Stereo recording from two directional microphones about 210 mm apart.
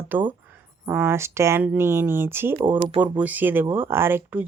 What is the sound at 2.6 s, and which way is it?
Speech, 20° right (ahead or behind).